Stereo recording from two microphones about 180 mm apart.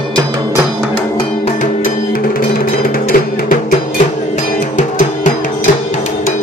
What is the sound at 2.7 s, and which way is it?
Music, 50° left (ahead or behind).